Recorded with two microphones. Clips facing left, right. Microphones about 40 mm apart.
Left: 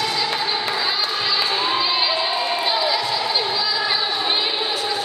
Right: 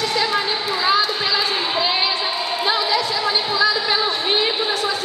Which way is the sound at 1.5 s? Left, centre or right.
Centre.